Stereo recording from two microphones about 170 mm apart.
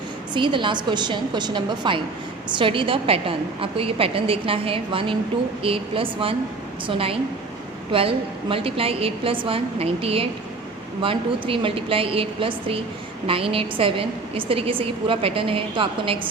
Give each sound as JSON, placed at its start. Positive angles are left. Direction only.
{"t": 0.3, "sound": "a woman's voice", "side_deg": -30}